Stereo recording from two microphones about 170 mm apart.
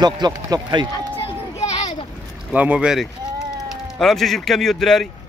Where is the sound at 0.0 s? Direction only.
25° right (ahead or behind).